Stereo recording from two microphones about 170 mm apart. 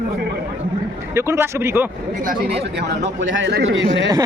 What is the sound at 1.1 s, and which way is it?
Speech, 15° right (ahead or behind).